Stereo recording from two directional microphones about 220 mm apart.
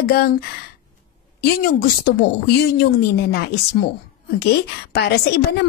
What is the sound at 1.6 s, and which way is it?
A woman's voice, 45° left (ahead or behind).